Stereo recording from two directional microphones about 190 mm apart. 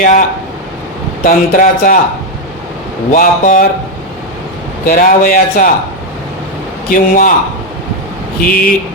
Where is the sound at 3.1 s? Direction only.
45° left (ahead or behind).